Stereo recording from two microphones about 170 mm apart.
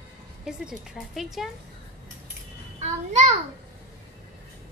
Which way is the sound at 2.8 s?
40° right (ahead or behind).